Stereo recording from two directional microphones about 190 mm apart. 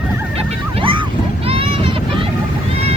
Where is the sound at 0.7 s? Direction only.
25° right (ahead or behind).